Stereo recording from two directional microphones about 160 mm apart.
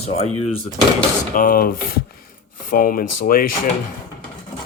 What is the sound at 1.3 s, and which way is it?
Speech, 65° left (ahead or behind).